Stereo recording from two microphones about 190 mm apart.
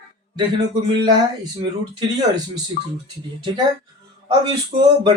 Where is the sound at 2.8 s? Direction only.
50° left (ahead or behind).